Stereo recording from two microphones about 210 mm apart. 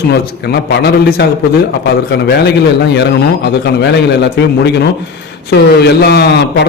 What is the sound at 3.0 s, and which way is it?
Speech, 55° left (ahead or behind).